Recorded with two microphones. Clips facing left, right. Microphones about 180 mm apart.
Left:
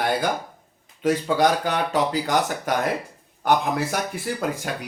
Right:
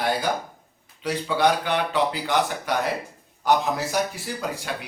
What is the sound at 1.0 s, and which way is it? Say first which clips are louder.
Speech: left 2 dB; 45° left (ahead or behind).